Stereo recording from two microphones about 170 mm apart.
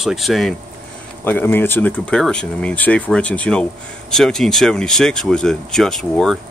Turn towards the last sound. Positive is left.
turn(degrees=0)  # may be behind; listen again after turning